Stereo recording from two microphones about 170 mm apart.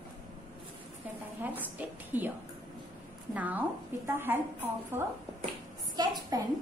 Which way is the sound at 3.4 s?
10° right (ahead or behind).